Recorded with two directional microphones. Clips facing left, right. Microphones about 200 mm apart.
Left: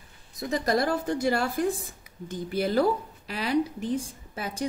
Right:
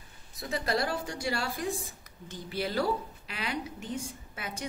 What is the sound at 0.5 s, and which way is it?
A woman's voice, 45° left (ahead or behind).